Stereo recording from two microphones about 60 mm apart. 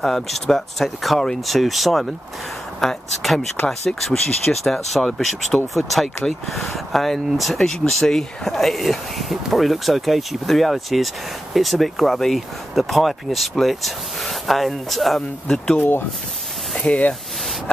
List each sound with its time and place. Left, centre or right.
0.0 s speech: centre
1.6 s speech: centre
16.8 s speech: left